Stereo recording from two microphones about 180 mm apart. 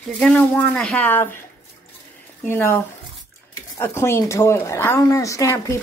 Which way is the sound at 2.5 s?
15° left (ahead or behind).